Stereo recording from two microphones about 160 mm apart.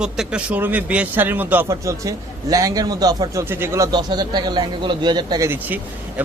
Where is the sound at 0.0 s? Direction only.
5° right (ahead or behind); by 5.5 s 25° right (ahead or behind).